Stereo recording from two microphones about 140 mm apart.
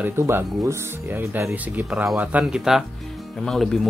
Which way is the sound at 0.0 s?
15° right (ahead or behind).